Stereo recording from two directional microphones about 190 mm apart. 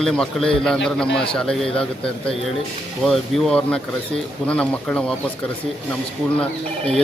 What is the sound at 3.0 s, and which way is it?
Speech, centre (ahead or behind).